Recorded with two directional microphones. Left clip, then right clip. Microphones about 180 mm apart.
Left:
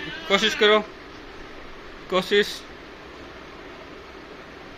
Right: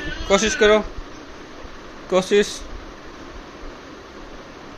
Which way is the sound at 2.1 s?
15° right (ahead or behind).